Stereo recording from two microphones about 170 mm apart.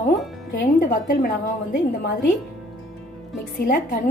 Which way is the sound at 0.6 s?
55° left (ahead or behind).